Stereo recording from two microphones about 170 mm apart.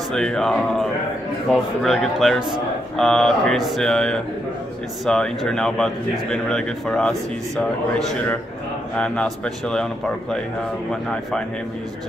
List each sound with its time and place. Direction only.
0.1 s a man's voice: centre (ahead or behind)
8.9 s a man's voice: 5° left (ahead or behind)